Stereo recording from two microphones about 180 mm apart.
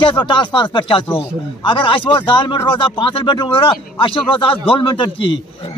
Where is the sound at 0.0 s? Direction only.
25° left (ahead or behind).